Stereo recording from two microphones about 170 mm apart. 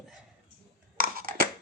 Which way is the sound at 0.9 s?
55° right (ahead or behind).